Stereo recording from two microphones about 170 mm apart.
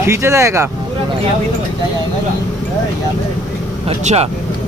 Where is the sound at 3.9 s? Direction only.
40° right (ahead or behind).